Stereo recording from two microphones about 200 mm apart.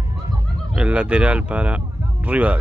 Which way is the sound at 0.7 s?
5° right (ahead or behind).